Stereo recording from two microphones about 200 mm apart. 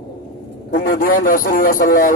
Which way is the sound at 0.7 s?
45° left (ahead or behind).